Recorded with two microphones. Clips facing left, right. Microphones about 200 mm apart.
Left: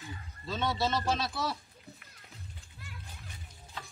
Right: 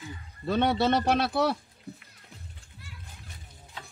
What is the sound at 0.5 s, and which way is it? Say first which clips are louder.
Speech: right 8 dB; 60° right (ahead or behind).